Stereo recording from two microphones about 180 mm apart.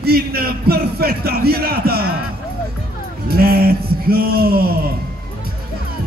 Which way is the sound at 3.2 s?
60° right (ahead or behind).